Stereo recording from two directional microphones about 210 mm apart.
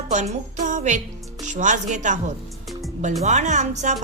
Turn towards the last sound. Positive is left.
turn(degrees=-35)  # may be behind; listen again after turning